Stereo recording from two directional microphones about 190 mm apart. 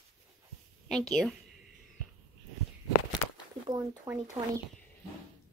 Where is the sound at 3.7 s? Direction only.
20° right (ahead or behind).